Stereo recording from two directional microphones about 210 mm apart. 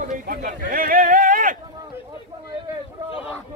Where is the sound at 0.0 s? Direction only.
40° right (ahead or behind).